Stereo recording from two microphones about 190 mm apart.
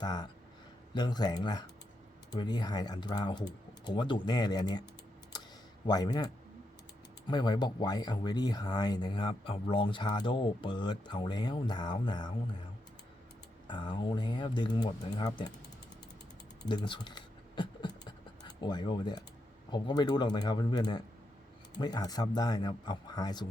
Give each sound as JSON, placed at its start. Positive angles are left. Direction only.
{"t": 0.0, "sound": "speech", "side_deg": 20}
{"t": 5.8, "sound": "speech", "side_deg": 20}
{"t": 13.7, "sound": "speech", "side_deg": 25}
{"t": 16.6, "sound": "scratch", "side_deg": 25}
{"t": 19.7, "sound": "speech", "side_deg": 20}